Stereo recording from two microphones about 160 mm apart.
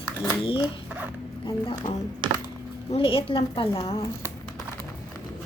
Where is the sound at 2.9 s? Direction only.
35° left (ahead or behind).